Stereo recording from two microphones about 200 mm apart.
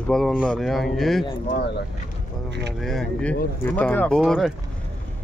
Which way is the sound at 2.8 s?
Centre (ahead or behind).